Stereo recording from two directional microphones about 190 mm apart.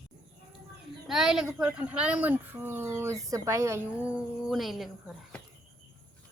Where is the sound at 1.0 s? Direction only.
Centre (ahead or behind).